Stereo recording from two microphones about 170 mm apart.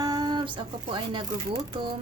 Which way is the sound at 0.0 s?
25° right (ahead or behind).